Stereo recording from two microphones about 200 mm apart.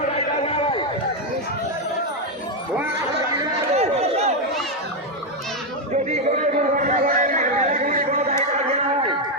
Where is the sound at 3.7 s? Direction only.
30° right (ahead or behind).